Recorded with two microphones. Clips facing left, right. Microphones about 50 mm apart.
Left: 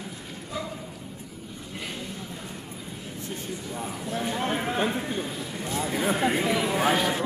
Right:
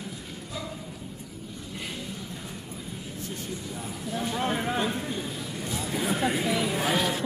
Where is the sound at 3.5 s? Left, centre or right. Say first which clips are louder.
Left 2 dB; centre.